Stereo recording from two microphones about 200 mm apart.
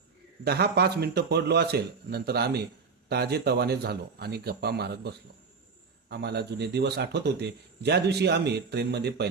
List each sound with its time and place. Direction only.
0.4 s a man's voice: 55° right (ahead or behind)